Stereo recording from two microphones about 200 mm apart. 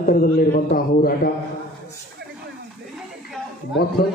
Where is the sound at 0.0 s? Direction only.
45° left (ahead or behind).